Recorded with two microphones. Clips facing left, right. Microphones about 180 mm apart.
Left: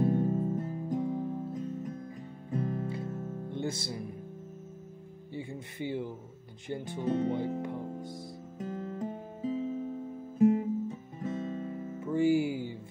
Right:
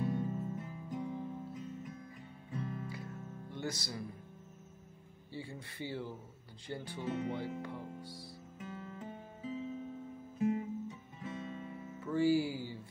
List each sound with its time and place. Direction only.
0.0 s music: 45° left (ahead or behind)
2.9 s music: 25° left (ahead or behind)
3.2 s music: 40° left (ahead or behind)
3.4 s music: 25° left (ahead or behind)
5.3 s speech: 20° left (ahead or behind)
6.9 s speech: 45° left (ahead or behind)
8.1 s music: 40° left (ahead or behind)
10.4 s guitar: 45° left (ahead or behind)
12.0 s music: 20° left (ahead or behind)